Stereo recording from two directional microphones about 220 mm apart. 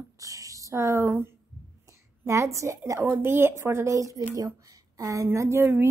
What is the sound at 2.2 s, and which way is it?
Speech, 15° right (ahead or behind).